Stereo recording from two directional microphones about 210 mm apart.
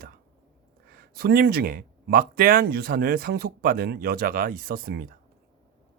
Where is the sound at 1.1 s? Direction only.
45° right (ahead or behind).